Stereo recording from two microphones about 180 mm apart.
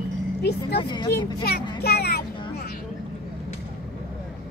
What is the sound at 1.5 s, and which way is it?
Speech, 65° left (ahead or behind).